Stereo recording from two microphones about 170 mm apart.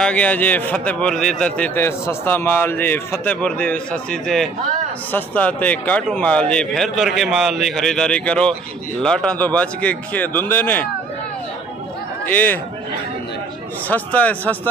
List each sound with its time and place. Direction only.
0.0 s a man's voice: 5° left (ahead or behind)
12.3 s a man's voice: 10° left (ahead or behind)
13.8 s a man's voice: 10° left (ahead or behind)